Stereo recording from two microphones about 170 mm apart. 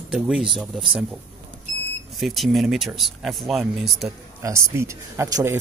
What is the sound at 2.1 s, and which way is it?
Speech, centre (ahead or behind).